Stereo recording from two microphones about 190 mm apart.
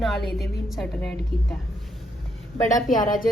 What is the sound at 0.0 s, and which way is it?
A woman's voice, centre (ahead or behind).